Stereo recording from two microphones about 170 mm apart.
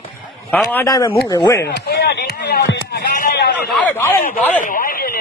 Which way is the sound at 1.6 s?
70° left (ahead or behind).